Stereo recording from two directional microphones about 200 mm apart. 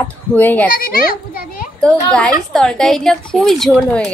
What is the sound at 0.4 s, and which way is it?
Speech, 10° left (ahead or behind).